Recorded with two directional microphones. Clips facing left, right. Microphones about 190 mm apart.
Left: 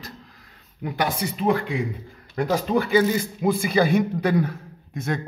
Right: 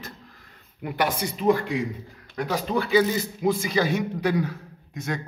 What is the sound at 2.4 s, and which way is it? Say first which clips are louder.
Speech: left 4 dB; 50° left (ahead or behind).